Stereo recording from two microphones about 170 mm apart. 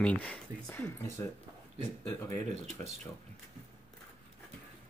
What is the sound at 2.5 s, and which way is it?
Speech, 40° right (ahead or behind).